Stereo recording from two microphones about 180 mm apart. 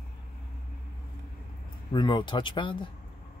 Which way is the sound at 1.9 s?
25° left (ahead or behind).